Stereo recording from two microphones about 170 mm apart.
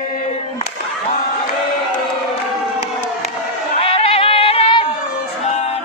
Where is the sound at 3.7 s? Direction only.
35° left (ahead or behind).